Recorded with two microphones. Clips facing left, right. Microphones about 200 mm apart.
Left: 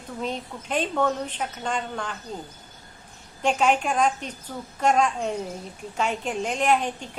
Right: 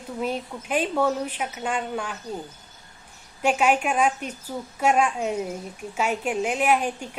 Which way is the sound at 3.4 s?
10° right (ahead or behind).